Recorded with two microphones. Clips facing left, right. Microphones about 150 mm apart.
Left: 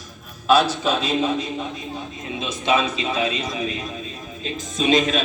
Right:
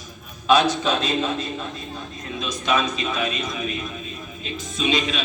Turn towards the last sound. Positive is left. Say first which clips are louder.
# left 5 dB
turn(degrees=45)  # may be behind; listen again after turning